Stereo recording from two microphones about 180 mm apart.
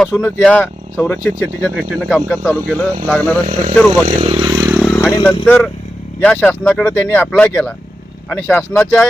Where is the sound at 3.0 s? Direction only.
10° left (ahead or behind).